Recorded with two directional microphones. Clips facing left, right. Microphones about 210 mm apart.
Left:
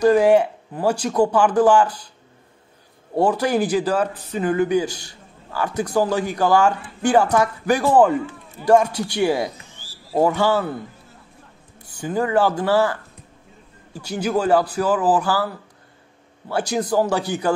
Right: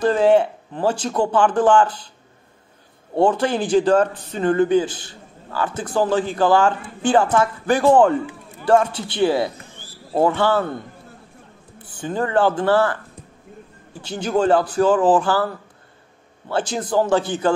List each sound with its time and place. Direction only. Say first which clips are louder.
0.0 s speech: left 1 dB; 10° left (ahead or behind)
3.2 s speech: even; 10° left (ahead or behind)
9.6 s a sound: right 4 dB; 55° right (ahead or behind)
10.1 s speech: even; 10° left (ahead or behind)
12.0 s speech: even; 10° left (ahead or behind)
14.0 s speech: right 2 dB; 10° left (ahead or behind)